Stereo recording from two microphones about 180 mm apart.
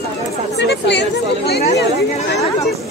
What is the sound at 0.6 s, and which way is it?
Speech, 75° left (ahead or behind).